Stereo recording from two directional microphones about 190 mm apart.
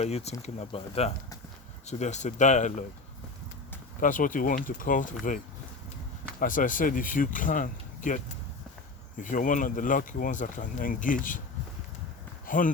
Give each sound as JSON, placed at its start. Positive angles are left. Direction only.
{"t": 0.0, "sound": "speech", "side_deg": 35}
{"t": 4.0, "sound": "speech", "side_deg": 45}
{"t": 6.4, "sound": "speech", "side_deg": 45}
{"t": 12.5, "sound": "speech", "side_deg": 45}